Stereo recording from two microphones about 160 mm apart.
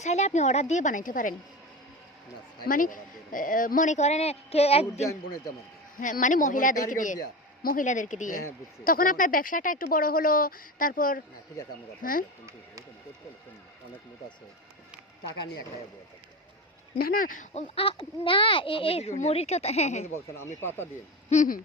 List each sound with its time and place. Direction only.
0.0 s speech: 45° left (ahead or behind)
2.6 s speech: 60° left (ahead or behind); by 5.0 s 40° left (ahead or behind)
6.0 s speech: 55° left (ahead or behind)
17.0 s a child's voice: 60° left (ahead or behind); by 20.1 s 45° left (ahead or behind)
20.1 s speech: 15° left (ahead or behind)
21.2 s hoot: 55° left (ahead or behind)